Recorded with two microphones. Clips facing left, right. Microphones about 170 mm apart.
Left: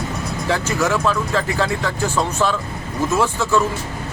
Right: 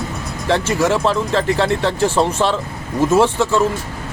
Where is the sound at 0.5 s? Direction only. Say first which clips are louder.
Right 4 dB; 30° right (ahead or behind).